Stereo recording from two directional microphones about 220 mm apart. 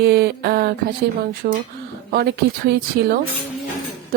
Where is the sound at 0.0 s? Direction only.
45° right (ahead or behind).